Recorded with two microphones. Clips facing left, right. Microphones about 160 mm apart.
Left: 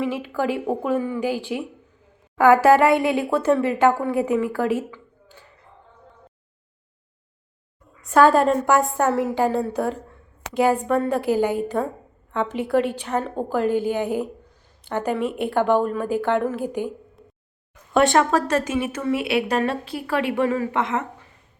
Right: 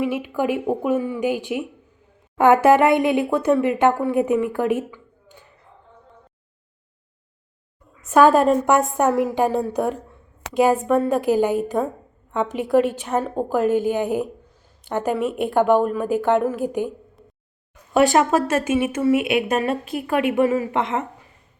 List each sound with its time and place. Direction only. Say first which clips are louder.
0.0 s a woman's voice: right 2 dB; 15° right (ahead or behind)
8.1 s a woman's voice: right 2 dB; 15° right (ahead or behind)
17.9 s a woman's voice: right 1 dB; 10° right (ahead or behind)